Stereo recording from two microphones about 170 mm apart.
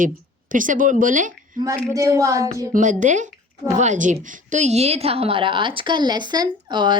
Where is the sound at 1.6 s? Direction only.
20° right (ahead or behind).